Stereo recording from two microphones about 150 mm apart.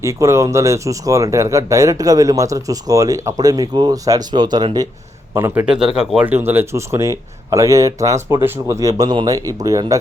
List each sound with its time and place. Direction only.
0.0 s speech: 20° right (ahead or behind)
5.6 s speech: 5° right (ahead or behind); by 10.0 s 25° right (ahead or behind)